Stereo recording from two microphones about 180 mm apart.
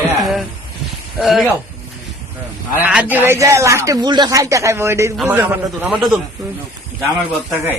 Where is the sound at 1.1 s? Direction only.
Centre (ahead or behind).